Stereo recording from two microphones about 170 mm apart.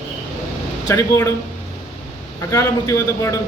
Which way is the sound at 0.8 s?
15° left (ahead or behind).